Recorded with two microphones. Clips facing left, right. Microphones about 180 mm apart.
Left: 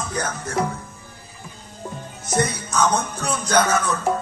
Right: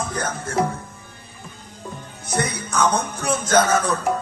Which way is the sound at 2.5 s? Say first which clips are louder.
Even; 60° right (ahead or behind).